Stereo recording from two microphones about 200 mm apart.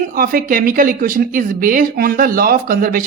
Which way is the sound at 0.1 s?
45° right (ahead or behind).